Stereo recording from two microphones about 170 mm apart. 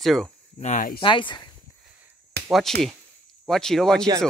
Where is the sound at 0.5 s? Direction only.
45° left (ahead or behind).